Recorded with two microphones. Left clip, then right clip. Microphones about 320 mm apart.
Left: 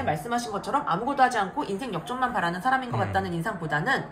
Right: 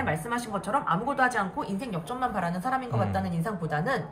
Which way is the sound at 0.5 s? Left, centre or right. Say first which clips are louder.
Right 1 dB; centre.